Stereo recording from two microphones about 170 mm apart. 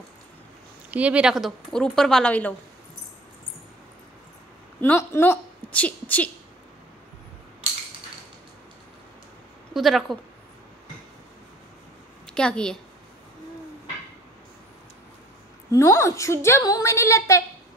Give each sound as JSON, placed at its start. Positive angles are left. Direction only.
{"t": 0.8, "sound": "speech", "side_deg": -10}
{"t": 4.8, "sound": "a woman's voice", "side_deg": 10}
{"t": 9.8, "sound": "speech", "side_deg": 0}
{"t": 12.4, "sound": "speech", "side_deg": 5}
{"t": 15.7, "sound": "a woman's voice", "side_deg": 20}